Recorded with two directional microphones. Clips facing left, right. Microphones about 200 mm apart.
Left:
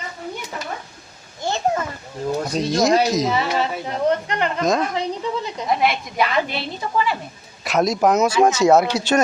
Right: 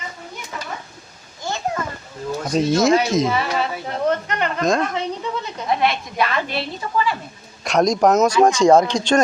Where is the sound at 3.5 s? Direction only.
25° left (ahead or behind).